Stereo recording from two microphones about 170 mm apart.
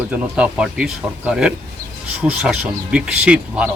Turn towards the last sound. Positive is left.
turn(degrees=-5)  # may be behind; listen again after turning